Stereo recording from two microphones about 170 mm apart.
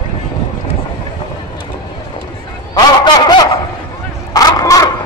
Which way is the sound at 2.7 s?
25° left (ahead or behind).